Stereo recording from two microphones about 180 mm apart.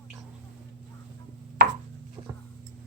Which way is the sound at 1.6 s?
55° right (ahead or behind).